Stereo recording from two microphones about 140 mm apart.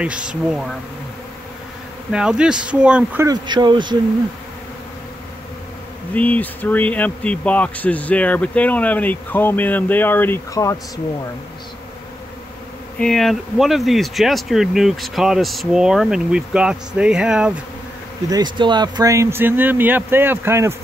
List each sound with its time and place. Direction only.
0.0 s speech: 5° right (ahead or behind)
2.1 s speech: 5° right (ahead or behind)
3.3 s speech: 30° right (ahead or behind)
6.1 s speech: 10° left (ahead or behind)
13.0 s speech: centre (ahead or behind)
18.3 s speech: 30° right (ahead or behind)